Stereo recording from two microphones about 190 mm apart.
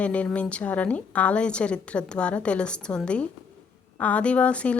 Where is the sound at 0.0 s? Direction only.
5° left (ahead or behind).